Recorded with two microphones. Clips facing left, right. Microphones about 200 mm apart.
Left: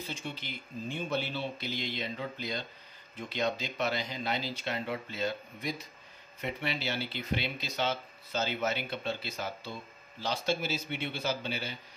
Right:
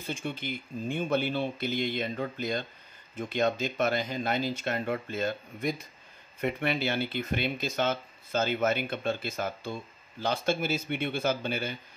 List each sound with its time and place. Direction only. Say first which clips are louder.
0.0 s speech: right 5 dB; 50° right (ahead or behind)